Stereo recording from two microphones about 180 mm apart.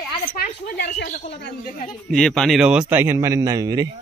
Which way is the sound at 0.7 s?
70° left (ahead or behind).